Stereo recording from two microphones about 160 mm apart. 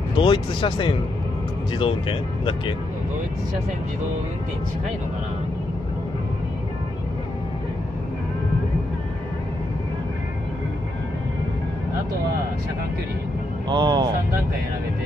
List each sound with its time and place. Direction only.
0.2 s speech: 30° left (ahead or behind)
13.7 s speech: 30° right (ahead or behind)